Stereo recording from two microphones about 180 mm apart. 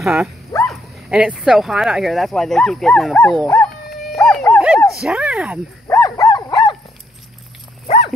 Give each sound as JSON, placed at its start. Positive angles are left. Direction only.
{"t": 0.0, "sound": "speech", "side_deg": -5}
{"t": 3.4, "sound": "dog", "side_deg": 15}
{"t": 3.9, "sound": "howl", "side_deg": 0}
{"t": 5.0, "sound": "speech", "side_deg": -5}
{"t": 5.9, "sound": "dog", "side_deg": 20}